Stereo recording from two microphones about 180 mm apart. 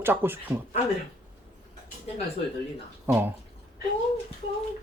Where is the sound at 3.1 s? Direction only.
10° right (ahead or behind).